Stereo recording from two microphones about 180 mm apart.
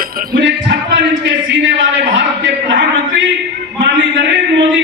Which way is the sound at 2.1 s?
90° right.